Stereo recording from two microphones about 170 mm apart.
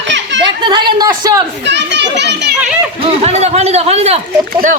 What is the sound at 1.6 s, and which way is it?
Children playing, 90° right.